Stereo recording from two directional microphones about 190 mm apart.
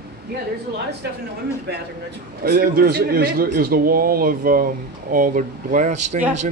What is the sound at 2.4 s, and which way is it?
A man's voice, 50° right (ahead or behind).